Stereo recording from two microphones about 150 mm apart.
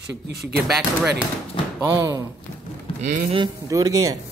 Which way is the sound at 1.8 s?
20° right (ahead or behind).